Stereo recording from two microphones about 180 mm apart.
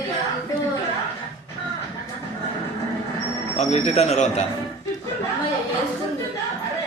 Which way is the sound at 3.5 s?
35° left (ahead or behind).